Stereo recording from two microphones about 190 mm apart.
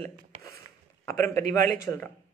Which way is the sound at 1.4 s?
45° right (ahead or behind).